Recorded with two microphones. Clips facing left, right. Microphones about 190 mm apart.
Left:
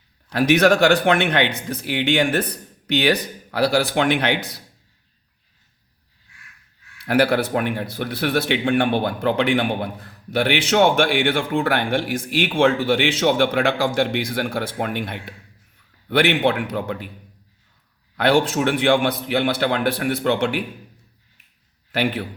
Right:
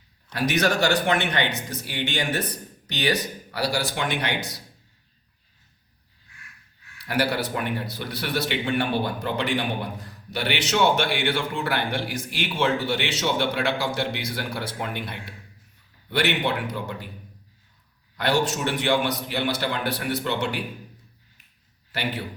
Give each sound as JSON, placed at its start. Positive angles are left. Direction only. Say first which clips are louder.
{"t": 0.3, "sound": "speech", "louder": "left 8 dB", "side_deg": 55}
{"t": 7.0, "sound": "speech", "louder": "left 7 dB", "side_deg": 55}
{"t": 18.2, "sound": "speech", "louder": "left 6 dB", "side_deg": 55}
{"t": 21.9, "sound": "speech", "louder": "left 7 dB", "side_deg": 55}